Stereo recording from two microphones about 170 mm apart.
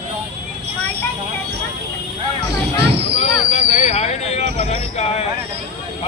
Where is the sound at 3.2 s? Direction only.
40° left (ahead or behind).